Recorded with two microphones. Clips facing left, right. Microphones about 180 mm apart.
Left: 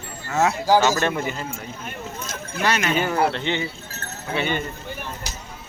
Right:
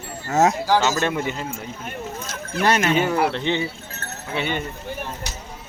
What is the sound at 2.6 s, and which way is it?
Speech, 45° right (ahead or behind).